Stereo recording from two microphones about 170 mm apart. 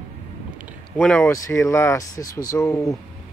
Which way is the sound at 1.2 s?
15° left (ahead or behind).